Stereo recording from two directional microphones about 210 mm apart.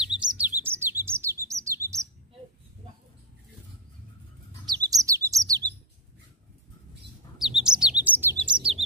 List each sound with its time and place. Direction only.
0.2 s bird: 5° right (ahead or behind)
4.6 s bird: 15° right (ahead or behind)
7.3 s bird: centre (ahead or behind)
8.0 s chirp: 10° right (ahead or behind)
8.4 s bird: 20° right (ahead or behind)